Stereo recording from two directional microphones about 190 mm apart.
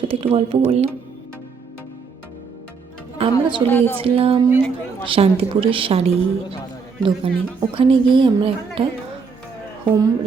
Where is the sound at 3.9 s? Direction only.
30° right (ahead or behind).